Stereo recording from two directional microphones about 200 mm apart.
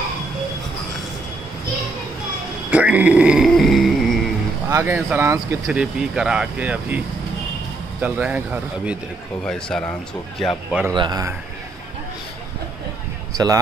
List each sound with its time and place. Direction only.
2.7 s speech: 5° right (ahead or behind)
4.6 s speech: 15° right (ahead or behind)
8.0 s speech: 5° right (ahead or behind)
11.0 s a man's voice: 20° right (ahead or behind)
13.3 s speech: 15° right (ahead or behind)